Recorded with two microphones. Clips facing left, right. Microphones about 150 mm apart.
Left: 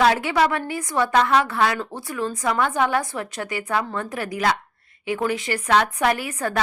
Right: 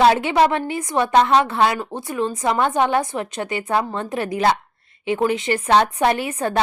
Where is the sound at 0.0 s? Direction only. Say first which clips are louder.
Right 3 dB; 25° right (ahead or behind).